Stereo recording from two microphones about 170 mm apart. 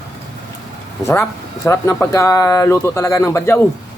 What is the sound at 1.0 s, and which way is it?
Speech, 15° left (ahead or behind).